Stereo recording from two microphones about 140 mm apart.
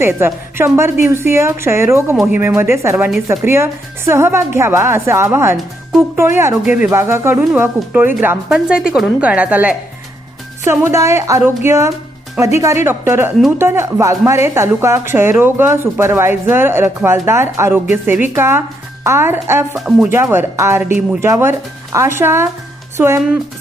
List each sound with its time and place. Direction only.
0.0 s a woman's voice: 15° right (ahead or behind)
19.7 s speech: centre (ahead or behind)
20.1 s speech: 20° right (ahead or behind)